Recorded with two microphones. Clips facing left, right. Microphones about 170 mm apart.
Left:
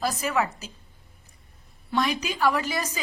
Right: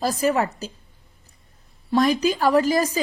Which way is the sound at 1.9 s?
40° right (ahead or behind).